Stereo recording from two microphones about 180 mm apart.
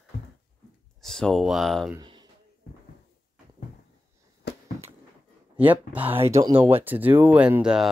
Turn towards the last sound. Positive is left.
turn(degrees=-5)  # may be behind; listen again after turning